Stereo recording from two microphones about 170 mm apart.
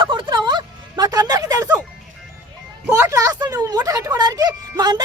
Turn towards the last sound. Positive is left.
turn(degrees=-25)  # may be behind; listen again after turning